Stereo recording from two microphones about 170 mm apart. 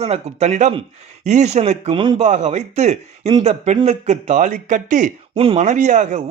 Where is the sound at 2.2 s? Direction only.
45° right (ahead or behind).